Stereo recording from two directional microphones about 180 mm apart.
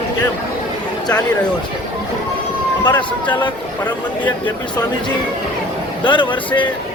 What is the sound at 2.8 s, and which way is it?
Speech, 25° left (ahead or behind).